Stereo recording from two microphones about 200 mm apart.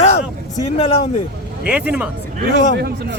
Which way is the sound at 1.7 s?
5° right (ahead or behind).